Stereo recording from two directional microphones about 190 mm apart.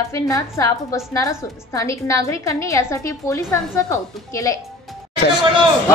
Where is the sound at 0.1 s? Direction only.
15° left (ahead or behind).